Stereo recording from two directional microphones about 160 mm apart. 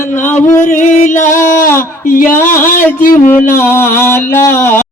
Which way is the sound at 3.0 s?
55° left (ahead or behind).